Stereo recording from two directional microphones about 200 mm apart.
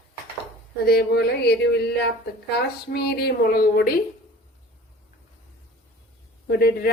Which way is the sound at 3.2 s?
45° left (ahead or behind).